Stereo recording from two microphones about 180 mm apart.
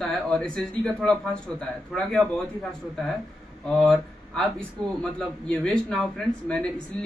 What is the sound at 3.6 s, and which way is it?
A man's voice, 5° left (ahead or behind).